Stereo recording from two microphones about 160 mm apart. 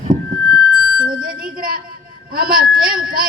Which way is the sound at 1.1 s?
60° right (ahead or behind).